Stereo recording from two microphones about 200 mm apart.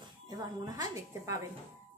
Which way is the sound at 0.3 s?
20° right (ahead or behind).